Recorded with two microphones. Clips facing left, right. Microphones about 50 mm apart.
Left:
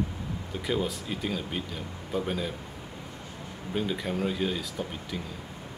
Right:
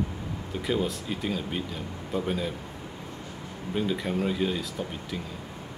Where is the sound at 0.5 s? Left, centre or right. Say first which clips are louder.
Right 2 dB; centre.